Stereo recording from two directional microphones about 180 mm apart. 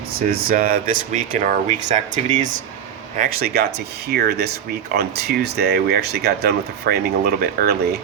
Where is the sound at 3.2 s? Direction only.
55° right (ahead or behind).